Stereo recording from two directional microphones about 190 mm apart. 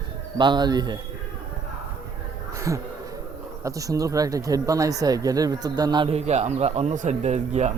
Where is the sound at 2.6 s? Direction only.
15° right (ahead or behind); by 7.7 s 35° right (ahead or behind).